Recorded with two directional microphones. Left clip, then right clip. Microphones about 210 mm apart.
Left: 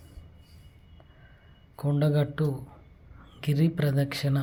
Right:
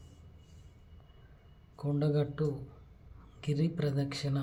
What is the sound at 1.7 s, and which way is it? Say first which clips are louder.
Speech: left 5 dB; 25° left (ahead or behind).